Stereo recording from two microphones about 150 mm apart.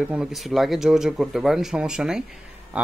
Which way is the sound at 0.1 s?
5° right (ahead or behind).